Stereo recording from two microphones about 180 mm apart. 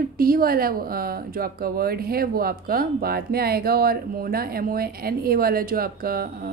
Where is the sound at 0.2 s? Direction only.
55° right (ahead or behind).